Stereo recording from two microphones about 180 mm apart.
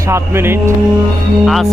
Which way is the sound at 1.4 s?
Centre (ahead or behind).